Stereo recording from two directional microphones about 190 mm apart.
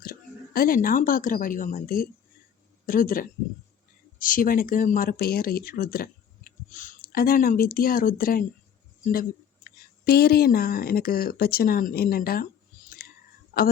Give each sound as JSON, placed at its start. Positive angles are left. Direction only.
{"t": 0.0, "sound": "a woman's voice", "side_deg": 50}
{"t": 9.6, "sound": "speech", "side_deg": 55}